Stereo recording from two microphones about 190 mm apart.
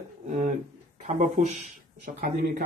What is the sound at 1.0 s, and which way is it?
Speech, 40° right (ahead or behind).